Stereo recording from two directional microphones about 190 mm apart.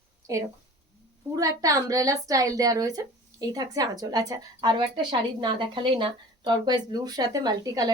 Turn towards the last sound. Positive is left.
turn(degrees=-20)  # may be behind; listen again after turning